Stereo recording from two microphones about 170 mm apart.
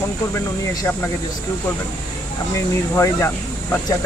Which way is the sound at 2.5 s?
15° left (ahead or behind).